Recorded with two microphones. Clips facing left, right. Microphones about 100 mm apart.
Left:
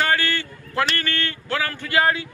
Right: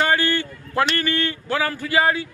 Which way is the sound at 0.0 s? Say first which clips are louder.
Right 2 dB; 15° right (ahead or behind).